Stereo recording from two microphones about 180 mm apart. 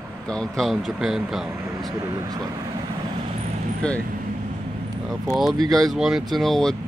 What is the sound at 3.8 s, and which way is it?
Speech, 5° left (ahead or behind).